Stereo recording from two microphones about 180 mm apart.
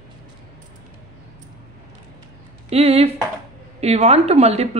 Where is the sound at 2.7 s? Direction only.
35° right (ahead or behind).